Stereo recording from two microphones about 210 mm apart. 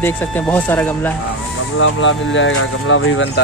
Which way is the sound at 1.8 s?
65° left (ahead or behind).